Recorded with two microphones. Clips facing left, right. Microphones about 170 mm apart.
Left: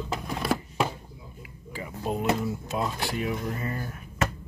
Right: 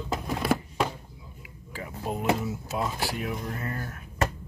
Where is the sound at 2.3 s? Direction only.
5° right (ahead or behind).